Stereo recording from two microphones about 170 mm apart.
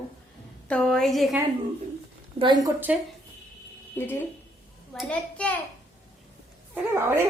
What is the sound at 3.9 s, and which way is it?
A woman's voice, 10° left (ahead or behind).